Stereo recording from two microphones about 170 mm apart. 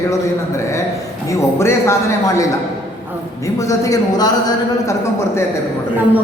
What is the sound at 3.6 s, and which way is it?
Speech, 20° left (ahead or behind).